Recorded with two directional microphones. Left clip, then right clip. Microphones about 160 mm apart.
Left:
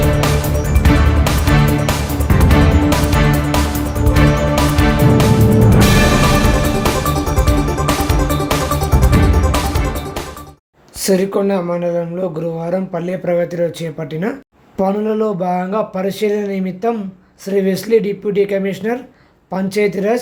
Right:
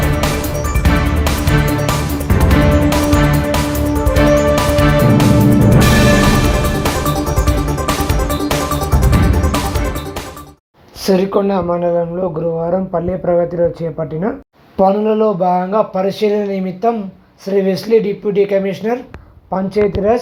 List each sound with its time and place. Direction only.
0.0 s music: centre (ahead or behind)
11.0 s speech: 10° left (ahead or behind)
12.5 s speech: 30° left (ahead or behind)
14.8 s speech: 5° left (ahead or behind)
19.5 s speech: 35° left (ahead or behind)